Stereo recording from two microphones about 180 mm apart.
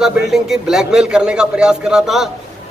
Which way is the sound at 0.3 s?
Centre (ahead or behind).